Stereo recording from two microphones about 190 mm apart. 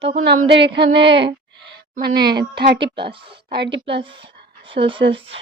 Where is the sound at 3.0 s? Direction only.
25° right (ahead or behind).